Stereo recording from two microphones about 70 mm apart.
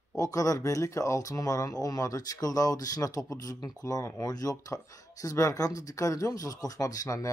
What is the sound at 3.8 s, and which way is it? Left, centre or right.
Speech, left.